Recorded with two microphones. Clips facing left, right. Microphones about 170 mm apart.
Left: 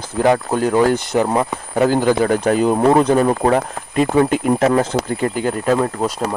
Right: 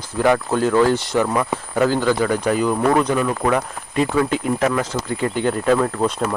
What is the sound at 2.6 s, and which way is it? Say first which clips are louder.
Speech: left 5 dB; 30° left (ahead or behind).